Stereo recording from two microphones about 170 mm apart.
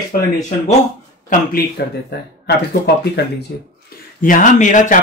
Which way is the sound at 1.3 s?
55° left (ahead or behind).